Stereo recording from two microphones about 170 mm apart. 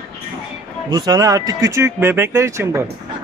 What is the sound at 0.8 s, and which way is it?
Speech, 25° right (ahead or behind).